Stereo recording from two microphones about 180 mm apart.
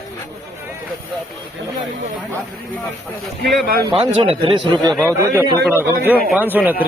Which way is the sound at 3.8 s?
30° right (ahead or behind).